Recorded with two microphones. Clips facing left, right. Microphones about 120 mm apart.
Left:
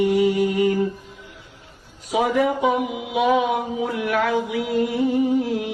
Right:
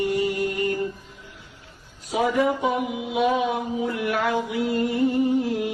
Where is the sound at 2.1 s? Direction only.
90° left.